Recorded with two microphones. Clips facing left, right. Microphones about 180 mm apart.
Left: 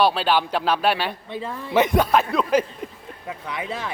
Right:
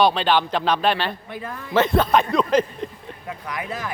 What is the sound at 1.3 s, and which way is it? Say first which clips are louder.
Speech: left 2 dB; 25° left (ahead or behind).